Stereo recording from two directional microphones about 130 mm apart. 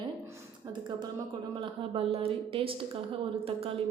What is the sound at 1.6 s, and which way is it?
A woman's voice, 45° right (ahead or behind).